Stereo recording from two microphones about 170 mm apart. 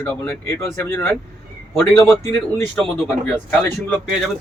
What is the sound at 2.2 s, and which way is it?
Speech, 15° left (ahead or behind).